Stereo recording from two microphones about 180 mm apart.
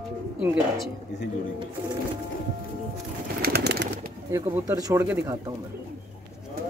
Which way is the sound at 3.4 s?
60° right (ahead or behind).